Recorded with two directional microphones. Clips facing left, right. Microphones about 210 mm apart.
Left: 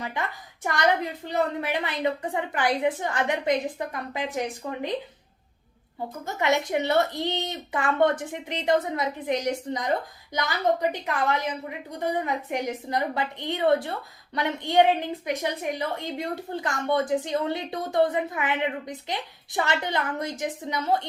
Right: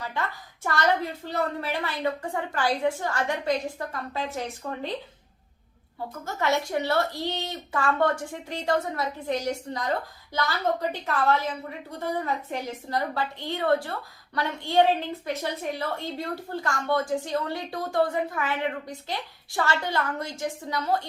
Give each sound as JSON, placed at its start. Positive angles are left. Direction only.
{"t": 0.0, "sound": "a woman's voice", "side_deg": 20}
{"t": 6.2, "sound": "a woman's voice", "side_deg": 20}